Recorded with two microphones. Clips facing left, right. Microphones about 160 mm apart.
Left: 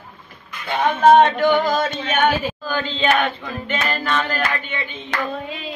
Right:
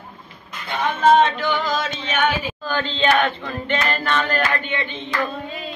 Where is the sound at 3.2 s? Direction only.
5° left (ahead or behind).